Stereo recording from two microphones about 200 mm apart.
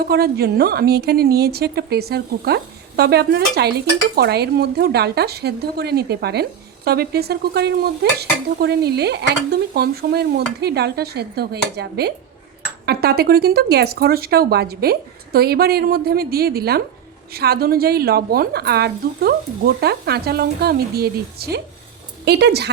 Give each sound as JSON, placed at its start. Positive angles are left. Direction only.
{"t": 0.0, "sound": "a woman's voice", "side_deg": -50}